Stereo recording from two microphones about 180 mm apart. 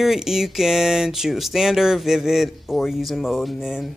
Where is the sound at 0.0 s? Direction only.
Centre (ahead or behind).